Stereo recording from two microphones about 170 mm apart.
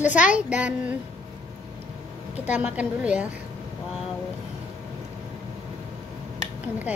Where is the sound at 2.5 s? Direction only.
10° right (ahead or behind).